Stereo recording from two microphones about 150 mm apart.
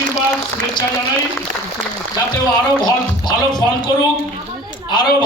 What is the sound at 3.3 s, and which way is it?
Speech, 30° left (ahead or behind).